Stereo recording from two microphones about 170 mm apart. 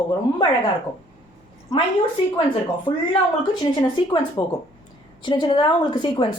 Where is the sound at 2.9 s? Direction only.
30° left (ahead or behind).